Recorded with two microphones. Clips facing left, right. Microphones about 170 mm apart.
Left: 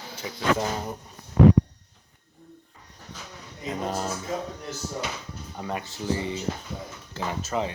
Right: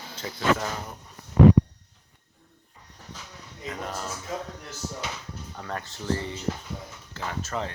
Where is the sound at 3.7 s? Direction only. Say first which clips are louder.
Left 5 dB; 20° left (ahead or behind).